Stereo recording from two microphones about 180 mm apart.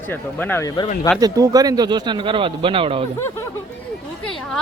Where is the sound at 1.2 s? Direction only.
20° right (ahead or behind).